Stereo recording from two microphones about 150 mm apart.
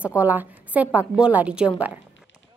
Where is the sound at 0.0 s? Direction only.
15° left (ahead or behind).